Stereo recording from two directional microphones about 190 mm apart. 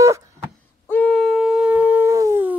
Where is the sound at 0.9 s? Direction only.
5° left (ahead or behind); by 2.6 s 10° right (ahead or behind).